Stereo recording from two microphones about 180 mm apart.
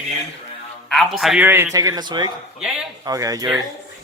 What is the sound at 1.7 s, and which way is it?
Speech, 20° right (ahead or behind).